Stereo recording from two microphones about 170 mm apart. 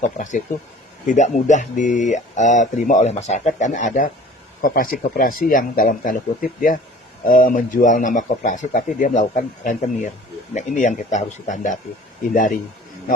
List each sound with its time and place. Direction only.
0.0 s speech: 45° left (ahead or behind)